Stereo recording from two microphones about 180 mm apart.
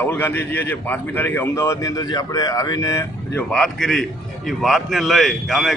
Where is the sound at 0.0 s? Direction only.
10° left (ahead or behind).